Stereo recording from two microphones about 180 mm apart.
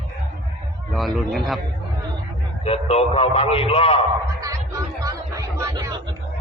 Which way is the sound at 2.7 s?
35° left (ahead or behind).